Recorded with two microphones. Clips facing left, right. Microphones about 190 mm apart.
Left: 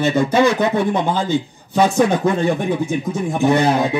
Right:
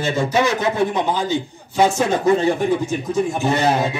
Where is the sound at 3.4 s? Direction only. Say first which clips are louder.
Left 8 dB; 60° left (ahead or behind).